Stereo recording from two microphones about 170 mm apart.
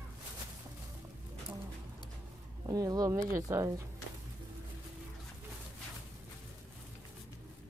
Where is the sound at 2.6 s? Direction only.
20° right (ahead or behind).